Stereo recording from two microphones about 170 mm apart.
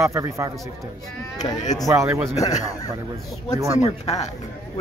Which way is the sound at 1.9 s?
15° right (ahead or behind).